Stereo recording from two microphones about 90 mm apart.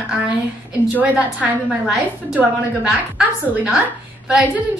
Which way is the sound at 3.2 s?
5° right (ahead or behind).